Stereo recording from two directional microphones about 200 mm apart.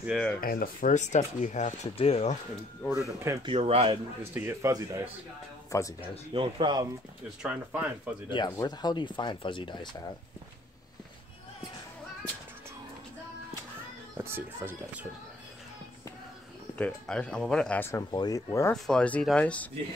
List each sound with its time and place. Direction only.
0.0 s speech: centre (ahead or behind)
0.4 s speech: 45° left (ahead or behind); by 2.3 s 30° left (ahead or behind)
3.4 s speech: 30° right (ahead or behind)
4.2 s a man's voice: 10° right (ahead or behind)
5.7 s speech: 15° left (ahead or behind)
6.3 s speech: 25° right (ahead or behind)
7.4 s a man's voice: 5° right (ahead or behind)
8.3 s speech: 20° left (ahead or behind)
14.1 s a man's voice: 10° right (ahead or behind)
16.7 s speech: 5° left (ahead or behind)